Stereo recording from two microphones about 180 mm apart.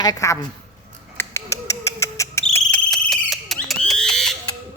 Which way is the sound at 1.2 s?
15° left (ahead or behind).